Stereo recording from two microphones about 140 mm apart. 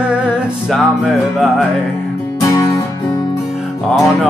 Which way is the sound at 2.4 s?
25° left (ahead or behind).